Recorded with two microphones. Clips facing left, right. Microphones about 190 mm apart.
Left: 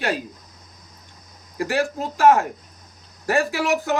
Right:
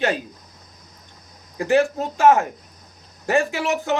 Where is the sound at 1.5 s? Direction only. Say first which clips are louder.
Right 5 dB; 20° right (ahead or behind).